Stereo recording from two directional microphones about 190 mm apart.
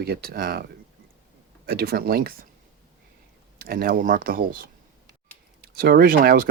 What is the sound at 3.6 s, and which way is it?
Speech, 50° right (ahead or behind).